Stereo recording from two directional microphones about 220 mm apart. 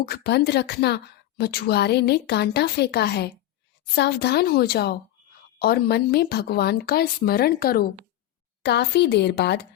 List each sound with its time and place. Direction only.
0.0 s speech: 50° left (ahead or behind)